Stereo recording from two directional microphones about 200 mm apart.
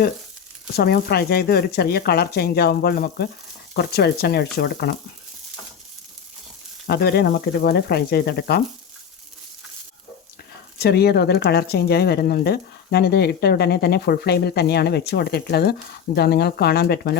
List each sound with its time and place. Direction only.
0.8 s speech: 50° left (ahead or behind)
6.8 s speech: 50° left (ahead or behind)
10.8 s speech: 50° left (ahead or behind)